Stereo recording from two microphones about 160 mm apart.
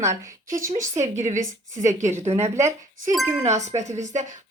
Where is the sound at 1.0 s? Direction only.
45° right (ahead or behind).